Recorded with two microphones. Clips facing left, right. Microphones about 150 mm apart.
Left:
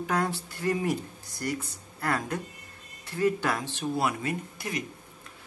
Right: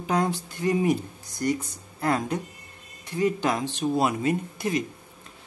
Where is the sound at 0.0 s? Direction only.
20° right (ahead or behind).